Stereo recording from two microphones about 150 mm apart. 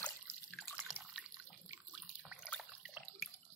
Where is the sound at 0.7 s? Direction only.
5° right (ahead or behind).